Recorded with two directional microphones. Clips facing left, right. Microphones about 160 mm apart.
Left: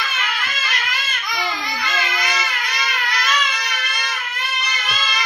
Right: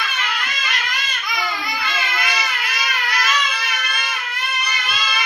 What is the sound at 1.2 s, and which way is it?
Baby cry, 5° right (ahead or behind).